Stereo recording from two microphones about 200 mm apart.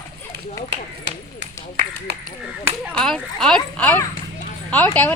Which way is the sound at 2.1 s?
55° right (ahead or behind).